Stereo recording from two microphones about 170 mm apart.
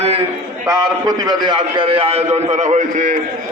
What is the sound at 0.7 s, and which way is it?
A man's voice, 20° right (ahead or behind).